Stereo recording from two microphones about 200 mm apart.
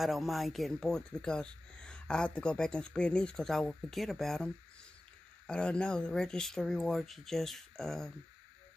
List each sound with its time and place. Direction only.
0.0 s speech: centre (ahead or behind)
5.5 s speech: 5° left (ahead or behind)